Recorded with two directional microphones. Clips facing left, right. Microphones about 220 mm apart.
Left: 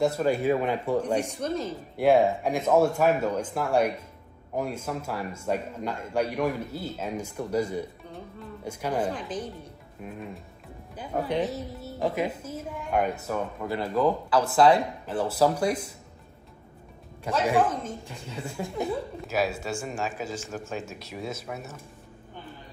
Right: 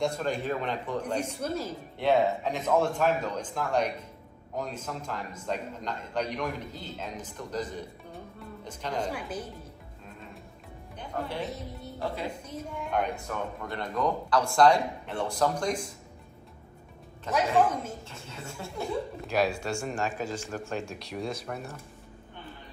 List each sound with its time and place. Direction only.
0.0 s a man's voice: 5° left (ahead or behind)
1.2 s speech: 5° right (ahead or behind)
2.0 s a man's voice: 10° left (ahead or behind)
9.1 s speech: 10° right (ahead or behind)
11.4 s speech: centre (ahead or behind)
17.3 s a man's voice: 10° left (ahead or behind)
19.2 s speech: 5° left (ahead or behind)